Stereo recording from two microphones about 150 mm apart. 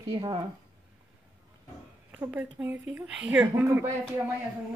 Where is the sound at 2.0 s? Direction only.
10° right (ahead or behind).